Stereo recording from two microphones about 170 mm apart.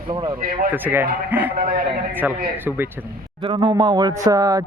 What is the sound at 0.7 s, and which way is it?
Speech, 10° right (ahead or behind).